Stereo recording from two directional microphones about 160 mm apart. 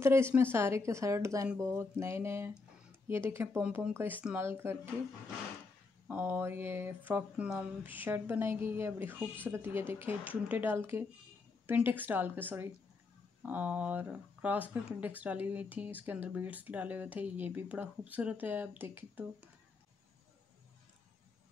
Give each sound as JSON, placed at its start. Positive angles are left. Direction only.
{"t": 0.0, "sound": "speech", "side_deg": -15}
{"t": 6.0, "sound": "speech", "side_deg": -10}